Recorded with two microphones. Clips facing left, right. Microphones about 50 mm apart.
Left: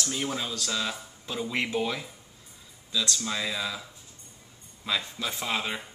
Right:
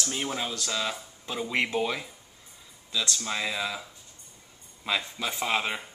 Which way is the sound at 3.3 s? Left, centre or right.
Centre.